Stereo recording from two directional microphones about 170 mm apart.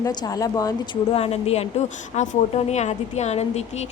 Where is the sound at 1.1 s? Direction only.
35° left (ahead or behind).